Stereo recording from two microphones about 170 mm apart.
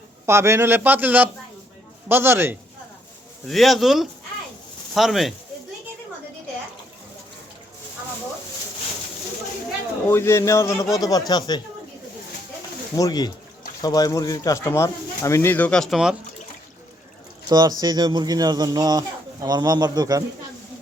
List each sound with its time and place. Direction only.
0.3 s a man's voice: 15° right (ahead or behind)
3.4 s speech: centre (ahead or behind)
10.1 s speech: 15° left (ahead or behind)
13.0 s speech: 25° left (ahead or behind); by 16.1 s centre (ahead or behind)
17.5 s speech: 25° right (ahead or behind)